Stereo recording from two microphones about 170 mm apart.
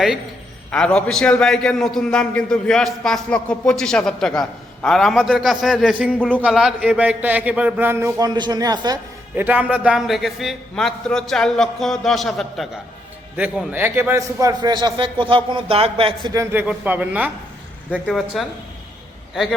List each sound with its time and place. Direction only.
0.7 s a man's voice: 5° left (ahead or behind)
6.4 s a man's voice: 5° right (ahead or behind); by 9.0 s 25° right (ahead or behind)
9.3 s a man's voice: 10° right (ahead or behind); by 16.3 s 35° right (ahead or behind)
16.3 s a man's voice: 15° right (ahead or behind)